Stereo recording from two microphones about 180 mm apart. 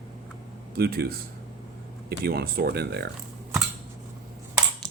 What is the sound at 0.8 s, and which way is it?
Speech, 60° right (ahead or behind).